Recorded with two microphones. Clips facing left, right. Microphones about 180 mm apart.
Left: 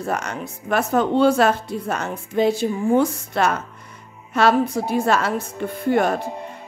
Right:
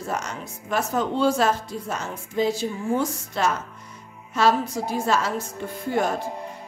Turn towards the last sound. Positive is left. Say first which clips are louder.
# left 5 dB
turn(degrees=65)  # may be behind; listen again after turning